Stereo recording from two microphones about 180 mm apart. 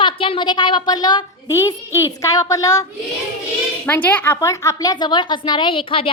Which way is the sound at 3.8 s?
10° left (ahead or behind).